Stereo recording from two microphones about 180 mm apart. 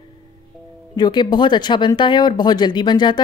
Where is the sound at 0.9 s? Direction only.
25° left (ahead or behind).